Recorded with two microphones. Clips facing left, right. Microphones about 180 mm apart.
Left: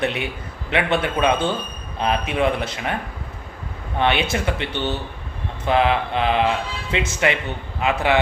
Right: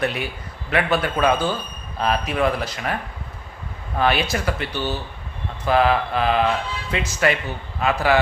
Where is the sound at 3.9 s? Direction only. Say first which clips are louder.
Even; 25° left (ahead or behind).